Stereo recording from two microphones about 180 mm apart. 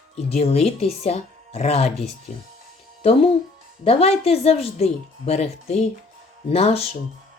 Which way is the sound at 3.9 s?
35° left (ahead or behind).